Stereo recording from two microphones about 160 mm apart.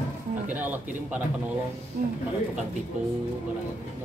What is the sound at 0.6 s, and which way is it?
Speech, 10° right (ahead or behind).